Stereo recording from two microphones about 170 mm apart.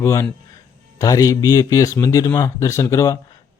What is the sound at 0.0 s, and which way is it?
A man's voice, 15° left (ahead or behind).